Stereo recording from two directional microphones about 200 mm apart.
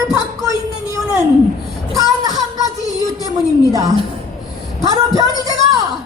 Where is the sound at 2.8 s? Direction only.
20° left (ahead or behind).